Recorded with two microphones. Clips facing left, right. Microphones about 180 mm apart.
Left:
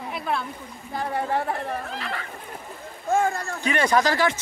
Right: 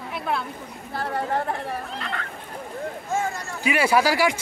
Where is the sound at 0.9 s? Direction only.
15° left (ahead or behind).